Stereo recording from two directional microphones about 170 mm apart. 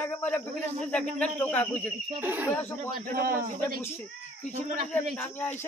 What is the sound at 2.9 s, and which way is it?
Speech, 60° right (ahead or behind).